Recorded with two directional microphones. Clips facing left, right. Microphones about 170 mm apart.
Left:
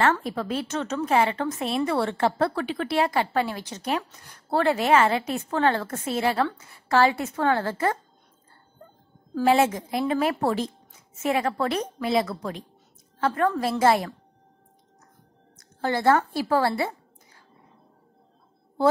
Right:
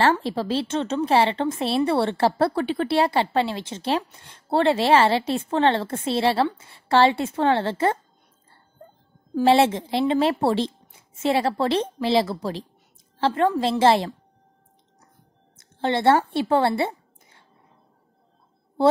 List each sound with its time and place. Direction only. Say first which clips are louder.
0.2 s a woman's voice: right 4 dB; 30° right (ahead or behind)
9.4 s a woman's voice: right 3 dB; 30° right (ahead or behind)
15.5 s speech: right 3 dB; 25° right (ahead or behind)